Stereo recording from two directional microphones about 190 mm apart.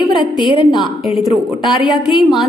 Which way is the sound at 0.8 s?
Centre (ahead or behind).